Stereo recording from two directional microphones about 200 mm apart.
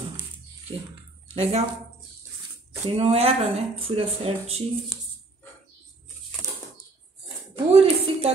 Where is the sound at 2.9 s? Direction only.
30° right (ahead or behind).